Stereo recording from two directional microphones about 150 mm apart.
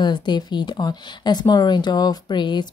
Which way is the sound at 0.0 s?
30° left (ahead or behind).